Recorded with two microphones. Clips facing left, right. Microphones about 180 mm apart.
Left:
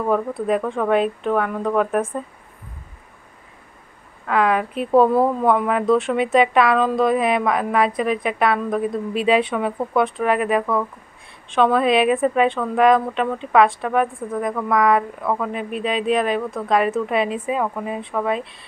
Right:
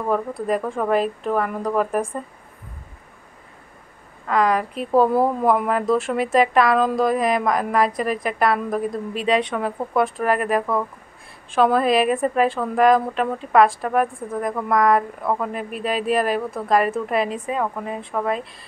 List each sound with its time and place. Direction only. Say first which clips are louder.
0.1 s a woman's voice: left 1 dB; centre (ahead or behind)
4.3 s a woman's voice: left 1 dB; 5° left (ahead or behind)